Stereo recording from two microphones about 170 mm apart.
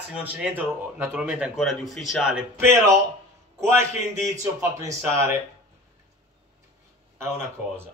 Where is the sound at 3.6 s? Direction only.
15° right (ahead or behind).